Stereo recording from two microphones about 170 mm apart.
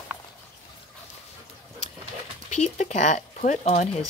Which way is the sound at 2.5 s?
45° left (ahead or behind).